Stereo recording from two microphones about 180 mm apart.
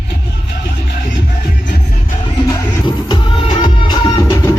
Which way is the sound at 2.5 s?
25° left (ahead or behind).